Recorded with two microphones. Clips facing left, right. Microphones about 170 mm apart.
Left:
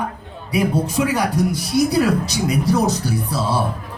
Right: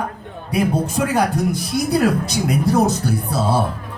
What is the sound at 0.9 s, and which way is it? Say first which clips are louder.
Speech: even; 50° right (ahead or behind).